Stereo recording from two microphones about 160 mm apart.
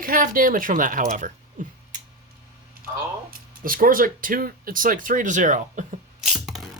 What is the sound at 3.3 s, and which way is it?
Speech, 60° right (ahead or behind).